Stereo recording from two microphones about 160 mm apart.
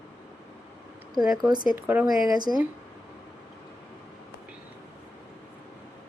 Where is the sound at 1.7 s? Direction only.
10° right (ahead or behind).